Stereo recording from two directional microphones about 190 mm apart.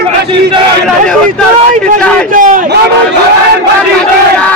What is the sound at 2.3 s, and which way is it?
Speech, 45° right (ahead or behind).